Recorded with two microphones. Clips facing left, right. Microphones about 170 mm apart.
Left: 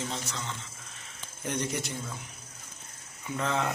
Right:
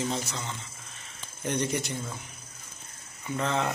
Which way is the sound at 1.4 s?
5° left (ahead or behind).